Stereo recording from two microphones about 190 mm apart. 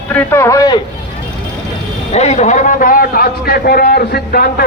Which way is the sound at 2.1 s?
35° left (ahead or behind).